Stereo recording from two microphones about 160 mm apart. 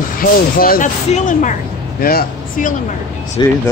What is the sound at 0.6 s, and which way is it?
Speech, 65° left (ahead or behind).